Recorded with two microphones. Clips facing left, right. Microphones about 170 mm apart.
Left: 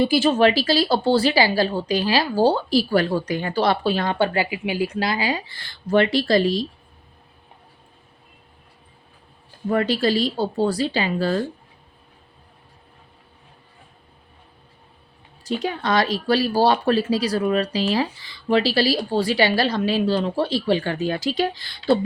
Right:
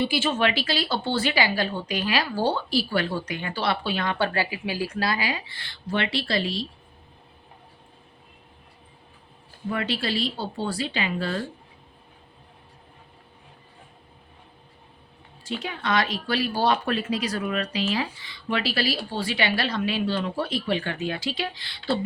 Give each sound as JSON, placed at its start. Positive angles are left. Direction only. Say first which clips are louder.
{"t": 0.0, "sound": "speech", "louder": "left 7 dB", "side_deg": 40}
{"t": 9.6, "sound": "speech", "louder": "left 8 dB", "side_deg": 40}
{"t": 15.4, "sound": "speech", "louder": "left 5 dB", "side_deg": 35}